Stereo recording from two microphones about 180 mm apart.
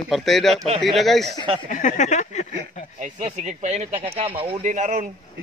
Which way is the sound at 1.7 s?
40° left (ahead or behind).